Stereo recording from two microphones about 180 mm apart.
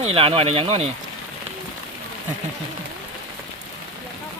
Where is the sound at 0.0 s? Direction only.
30° right (ahead or behind).